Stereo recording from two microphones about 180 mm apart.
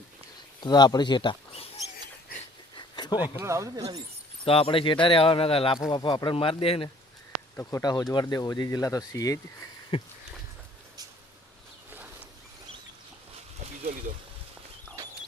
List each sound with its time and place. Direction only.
0.6 s speech: 25° left (ahead or behind)
2.7 s a sound: 25° left (ahead or behind)
3.3 s speech: 15° right (ahead or behind)
4.4 s speech: 30° left (ahead or behind)
7.5 s speech: 15° left (ahead or behind)
9.9 s a sound: 30° left (ahead or behind)